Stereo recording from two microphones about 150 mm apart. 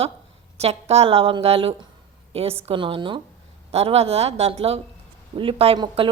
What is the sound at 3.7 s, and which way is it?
A woman's voice, 45° right (ahead or behind).